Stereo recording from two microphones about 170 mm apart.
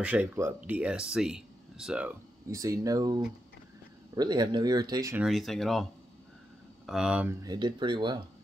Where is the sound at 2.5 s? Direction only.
20° right (ahead or behind).